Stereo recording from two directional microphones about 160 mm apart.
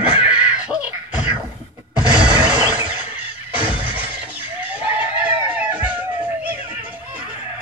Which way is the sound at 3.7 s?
10° right (ahead or behind).